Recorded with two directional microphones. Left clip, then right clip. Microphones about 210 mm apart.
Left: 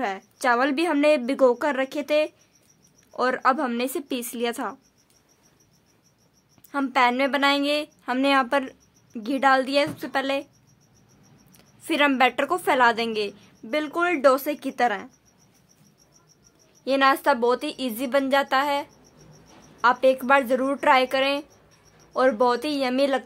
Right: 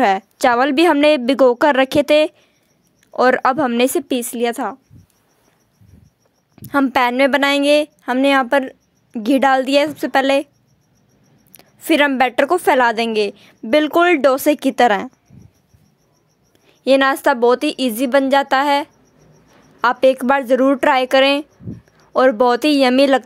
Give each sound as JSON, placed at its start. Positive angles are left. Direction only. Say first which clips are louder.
{"t": 0.0, "sound": "a woman's voice", "louder": "right 11 dB", "side_deg": -40}
{"t": 6.5, "sound": "a woman's voice", "louder": "right 8 dB", "side_deg": -35}
{"t": 11.5, "sound": "a woman's voice", "louder": "right 10 dB", "side_deg": -30}
{"t": 16.8, "sound": "a woman's voice", "louder": "right 6 dB", "side_deg": -35}